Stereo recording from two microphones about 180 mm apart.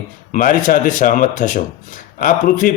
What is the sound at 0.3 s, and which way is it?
Speech, 45° left (ahead or behind).